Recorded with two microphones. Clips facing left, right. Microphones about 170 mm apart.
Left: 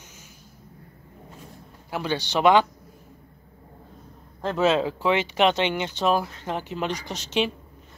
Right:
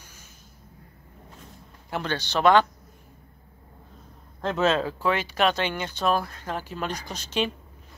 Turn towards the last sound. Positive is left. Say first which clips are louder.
# left 3 dB
turn(degrees=20)  # may be behind; listen again after turning